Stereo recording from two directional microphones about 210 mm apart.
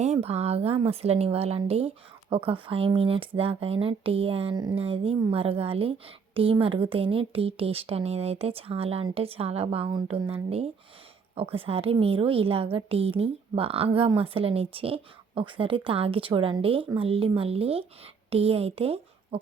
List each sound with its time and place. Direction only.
0.0 s a woman's voice: 30° right (ahead or behind)